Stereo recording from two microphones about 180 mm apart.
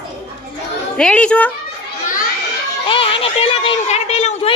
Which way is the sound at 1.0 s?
5° left (ahead or behind).